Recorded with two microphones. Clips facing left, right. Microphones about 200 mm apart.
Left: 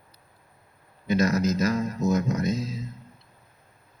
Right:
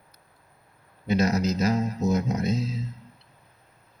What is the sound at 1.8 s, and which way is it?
Music, 50° left (ahead or behind).